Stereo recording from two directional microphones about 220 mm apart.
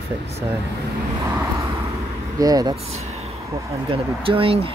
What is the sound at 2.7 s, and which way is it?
Speech, 30° right (ahead or behind).